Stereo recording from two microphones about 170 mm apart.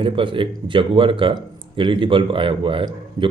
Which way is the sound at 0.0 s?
30° right (ahead or behind).